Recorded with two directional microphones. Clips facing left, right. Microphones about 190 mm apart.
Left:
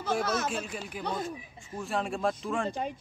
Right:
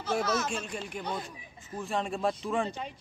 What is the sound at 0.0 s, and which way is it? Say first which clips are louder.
Speech: even; 55° left (ahead or behind).